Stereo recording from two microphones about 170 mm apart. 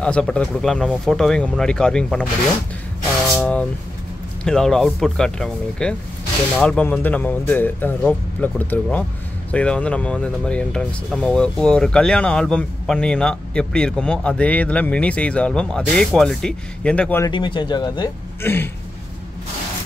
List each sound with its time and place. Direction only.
0.0 s speech: 5° left (ahead or behind)
3.3 s a sound: 10° left (ahead or behind)
4.5 s speech: 5° left (ahead or behind)
17.2 s speech: 30° left (ahead or behind)
18.4 s speech: 10° left (ahead or behind)